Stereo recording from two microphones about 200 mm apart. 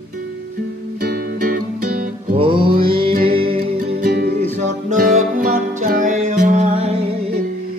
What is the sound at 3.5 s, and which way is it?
Music, 50° right (ahead or behind).